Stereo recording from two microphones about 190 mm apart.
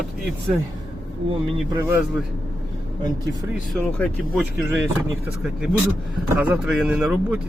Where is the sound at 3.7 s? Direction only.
5° left (ahead or behind).